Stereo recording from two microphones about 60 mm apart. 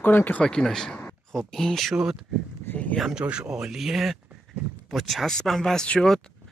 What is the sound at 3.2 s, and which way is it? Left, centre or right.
Speech, centre.